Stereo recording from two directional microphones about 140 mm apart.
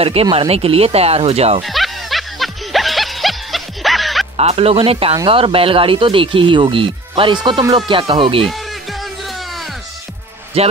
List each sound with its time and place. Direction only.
0.0 s speech: 45° right (ahead or behind)
1.6 s music: centre (ahead or behind)
4.4 s speech: 45° right (ahead or behind)
10.6 s speech: 45° right (ahead or behind)